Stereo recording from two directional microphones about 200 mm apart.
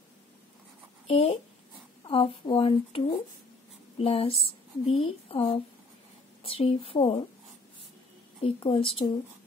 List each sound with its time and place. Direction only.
1.0 s speech: 30° left (ahead or behind)
4.0 s speech: 30° left (ahead or behind)
8.4 s speech: 25° left (ahead or behind)